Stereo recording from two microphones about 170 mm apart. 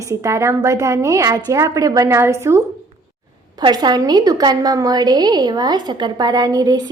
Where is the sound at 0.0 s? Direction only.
15° right (ahead or behind).